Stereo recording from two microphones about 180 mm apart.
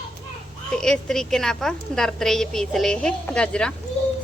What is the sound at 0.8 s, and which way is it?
A woman's voice, 5° left (ahead or behind).